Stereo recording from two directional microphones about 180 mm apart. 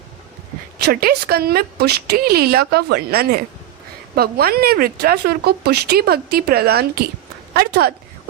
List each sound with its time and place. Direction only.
0.9 s speech: 60° right (ahead or behind)